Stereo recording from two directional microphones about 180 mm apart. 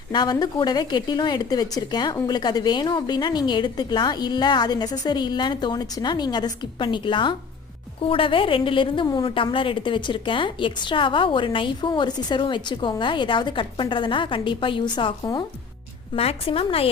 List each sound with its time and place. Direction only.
0.1 s a woman's voice: 25° left (ahead or behind)